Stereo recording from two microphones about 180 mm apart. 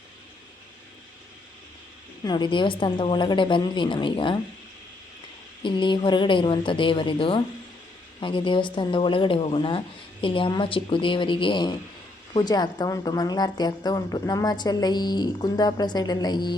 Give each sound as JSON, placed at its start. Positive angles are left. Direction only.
{"t": 2.2, "sound": "speech", "side_deg": 25}
{"t": 5.6, "sound": "speech", "side_deg": 25}